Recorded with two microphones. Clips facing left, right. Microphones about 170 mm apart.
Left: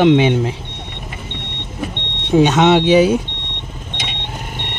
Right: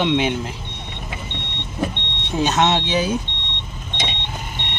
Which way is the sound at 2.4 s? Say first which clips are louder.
Left 7 dB; 90° left.